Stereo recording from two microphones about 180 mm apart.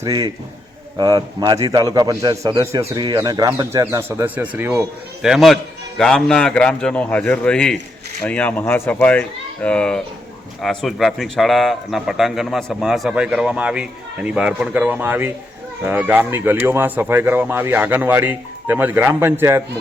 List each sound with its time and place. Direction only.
0.0 s a man's voice: 20° right (ahead or behind)